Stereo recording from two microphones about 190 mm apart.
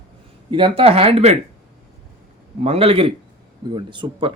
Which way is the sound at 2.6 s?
30° right (ahead or behind).